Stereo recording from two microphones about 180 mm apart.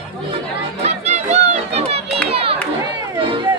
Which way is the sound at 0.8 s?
35° right (ahead or behind).